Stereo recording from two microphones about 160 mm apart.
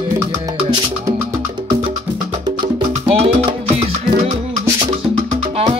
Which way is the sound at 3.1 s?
35° right (ahead or behind).